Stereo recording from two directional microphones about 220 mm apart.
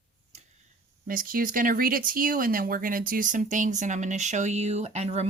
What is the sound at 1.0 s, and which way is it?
Speech, 40° right (ahead or behind).